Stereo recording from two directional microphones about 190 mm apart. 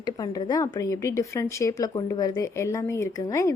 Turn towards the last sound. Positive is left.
turn(degrees=15)  # may be behind; listen again after turning